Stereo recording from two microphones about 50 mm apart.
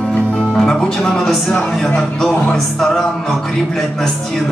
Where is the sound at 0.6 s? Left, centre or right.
Centre.